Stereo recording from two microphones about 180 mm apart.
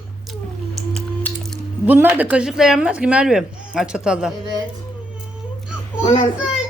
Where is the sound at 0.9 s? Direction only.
Centre (ahead or behind).